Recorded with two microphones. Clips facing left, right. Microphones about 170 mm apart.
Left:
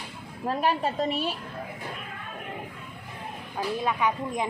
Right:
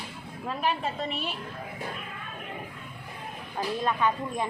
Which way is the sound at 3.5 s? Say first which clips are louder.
Even; 10° left (ahead or behind).